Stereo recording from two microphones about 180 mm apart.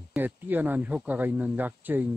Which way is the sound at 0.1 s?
10° right (ahead or behind).